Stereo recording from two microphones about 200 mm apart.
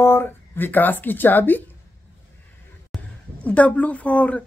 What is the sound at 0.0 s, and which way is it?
Speech, 10° left (ahead or behind).